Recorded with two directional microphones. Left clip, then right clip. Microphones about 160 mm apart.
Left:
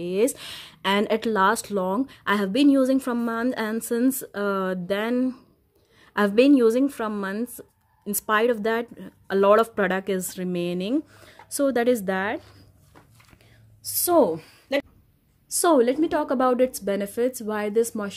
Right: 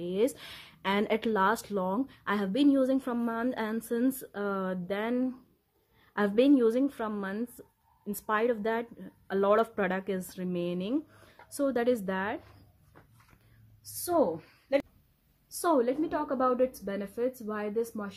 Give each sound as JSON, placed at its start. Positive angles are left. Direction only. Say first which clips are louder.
{"t": 0.0, "sound": "a woman's voice", "louder": "left 6 dB", "side_deg": 20}
{"t": 14.1, "sound": "a woman's voice", "louder": "left 8 dB", "side_deg": 60}
{"t": 15.6, "sound": "a woman's voice", "louder": "left 8 dB", "side_deg": 50}